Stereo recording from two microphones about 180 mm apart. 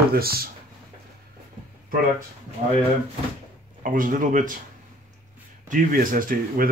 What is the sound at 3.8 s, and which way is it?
Speech, 50° right (ahead or behind).